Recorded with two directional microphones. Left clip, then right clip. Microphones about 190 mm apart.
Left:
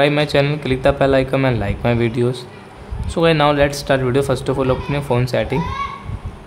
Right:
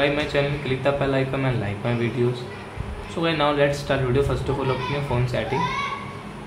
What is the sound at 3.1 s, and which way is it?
A man's voice, 45° left (ahead or behind).